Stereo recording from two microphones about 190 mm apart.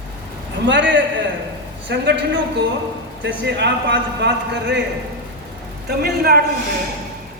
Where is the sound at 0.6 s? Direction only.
70° right (ahead or behind).